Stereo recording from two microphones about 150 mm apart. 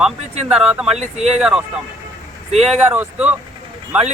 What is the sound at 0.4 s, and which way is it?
Speech, 5° right (ahead or behind).